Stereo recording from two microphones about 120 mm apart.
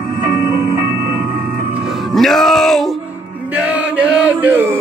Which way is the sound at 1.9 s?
Centre (ahead or behind).